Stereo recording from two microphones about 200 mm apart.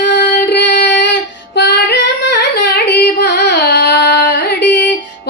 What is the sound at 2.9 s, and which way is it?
Music, 55° left (ahead or behind).